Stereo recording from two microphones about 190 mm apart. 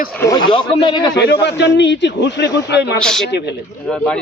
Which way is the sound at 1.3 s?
65° left (ahead or behind).